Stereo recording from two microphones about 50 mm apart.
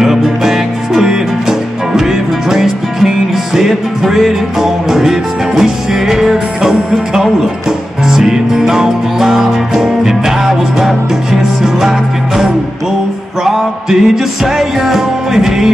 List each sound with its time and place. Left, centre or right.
0.0 s music: centre
8.1 s music: centre
13.4 s music: centre